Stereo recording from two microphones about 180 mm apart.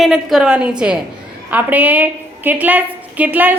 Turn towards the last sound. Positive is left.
turn(degrees=-10)  # may be behind; listen again after turning